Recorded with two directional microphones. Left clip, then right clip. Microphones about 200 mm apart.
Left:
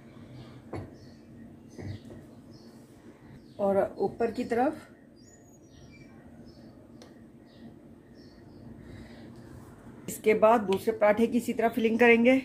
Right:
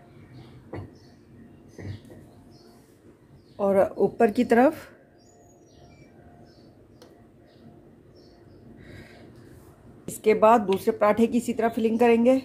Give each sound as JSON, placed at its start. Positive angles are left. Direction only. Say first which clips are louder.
{"t": 3.5, "sound": "speech", "louder": "right 5 dB", "side_deg": -30}
{"t": 4.2, "sound": "speech", "louder": "right 9 dB", "side_deg": -50}
{"t": 10.0, "sound": "a woman's voice", "louder": "right 4 dB", "side_deg": -15}